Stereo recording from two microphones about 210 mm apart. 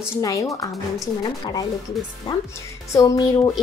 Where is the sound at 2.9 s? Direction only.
15° left (ahead or behind).